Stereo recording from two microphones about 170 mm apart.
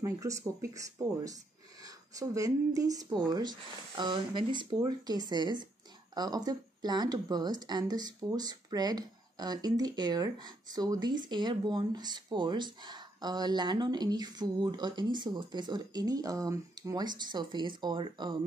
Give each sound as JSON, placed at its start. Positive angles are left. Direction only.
{"t": 0.0, "sound": "speech", "side_deg": -15}